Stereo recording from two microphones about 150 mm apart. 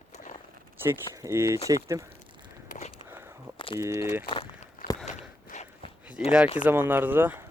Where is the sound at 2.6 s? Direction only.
55° left (ahead or behind).